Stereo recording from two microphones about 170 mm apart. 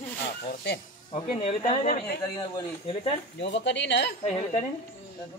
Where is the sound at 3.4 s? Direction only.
90° left.